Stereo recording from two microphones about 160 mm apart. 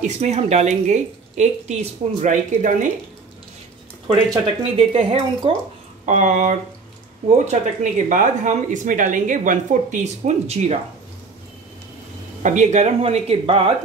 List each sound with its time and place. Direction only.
0.0 s speech: 45° right (ahead or behind)
4.7 s speech: 40° right (ahead or behind)
6.0 s speech: 50° right (ahead or behind)
12.4 s speech: 50° right (ahead or behind)